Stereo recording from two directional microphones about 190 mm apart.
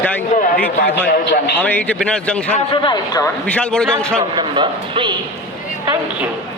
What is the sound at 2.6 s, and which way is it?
Speech, 25° left (ahead or behind).